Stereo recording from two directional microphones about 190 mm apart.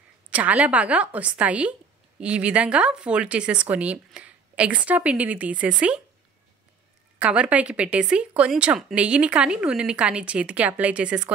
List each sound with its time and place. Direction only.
0.3 s a woman's voice: 5° right (ahead or behind)
7.2 s speech: 5° right (ahead or behind)